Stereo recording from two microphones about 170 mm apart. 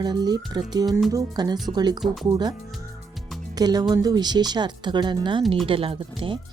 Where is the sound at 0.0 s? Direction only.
25° right (ahead or behind).